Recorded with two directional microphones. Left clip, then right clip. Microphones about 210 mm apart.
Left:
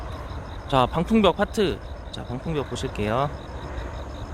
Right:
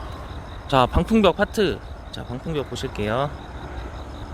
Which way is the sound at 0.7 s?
15° right (ahead or behind).